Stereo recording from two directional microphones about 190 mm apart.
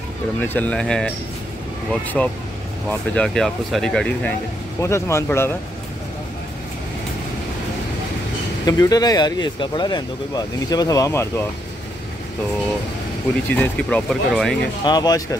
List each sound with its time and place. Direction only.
0.4 s speech: 10° left (ahead or behind)
4.7 s speech: 15° left (ahead or behind)
8.6 s speech: 20° left (ahead or behind)
13.5 s speech: 10° left (ahead or behind)
14.9 s speech: 20° left (ahead or behind)